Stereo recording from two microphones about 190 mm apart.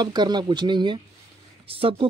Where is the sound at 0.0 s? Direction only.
20° right (ahead or behind).